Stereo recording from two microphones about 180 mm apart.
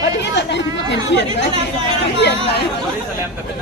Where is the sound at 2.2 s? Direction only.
65° left (ahead or behind).